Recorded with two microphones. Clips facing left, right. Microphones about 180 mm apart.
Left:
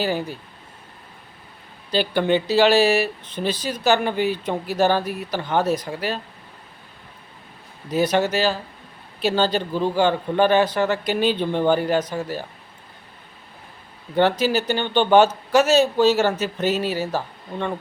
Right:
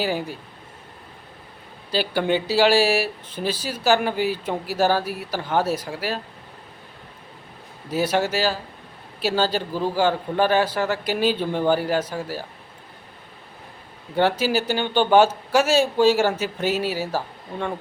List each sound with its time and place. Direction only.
0.0 s speech: 10° right (ahead or behind)
1.9 s speech: 10° right (ahead or behind)
7.9 s speech: 5° right (ahead or behind)
14.2 s speech: 10° right (ahead or behind)